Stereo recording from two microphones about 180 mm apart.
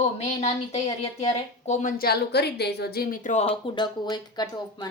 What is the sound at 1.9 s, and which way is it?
A woman's voice, 60° left (ahead or behind).